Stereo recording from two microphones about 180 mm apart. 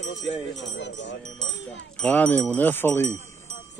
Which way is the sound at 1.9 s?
10° left (ahead or behind).